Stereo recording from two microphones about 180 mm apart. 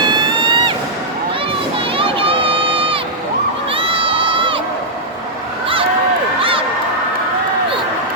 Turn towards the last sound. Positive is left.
turn(degrees=-30)  # may be behind; listen again after turning